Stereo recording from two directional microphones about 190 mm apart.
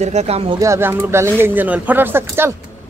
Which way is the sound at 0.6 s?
15° right (ahead or behind).